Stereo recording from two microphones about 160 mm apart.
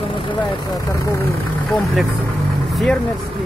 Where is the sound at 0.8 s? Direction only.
20° left (ahead or behind).